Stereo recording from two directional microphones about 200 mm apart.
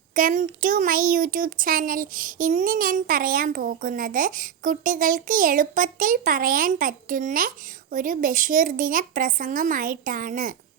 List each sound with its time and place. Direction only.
0.1 s a child's voice: 40° right (ahead or behind)